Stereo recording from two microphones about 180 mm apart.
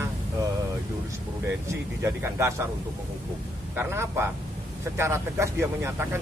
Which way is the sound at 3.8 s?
15° right (ahead or behind).